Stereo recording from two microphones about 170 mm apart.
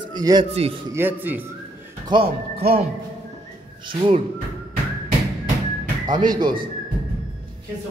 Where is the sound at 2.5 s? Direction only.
65° right (ahead or behind).